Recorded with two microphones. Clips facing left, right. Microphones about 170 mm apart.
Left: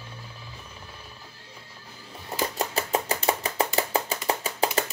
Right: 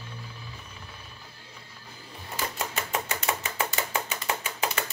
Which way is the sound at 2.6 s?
35° left (ahead or behind).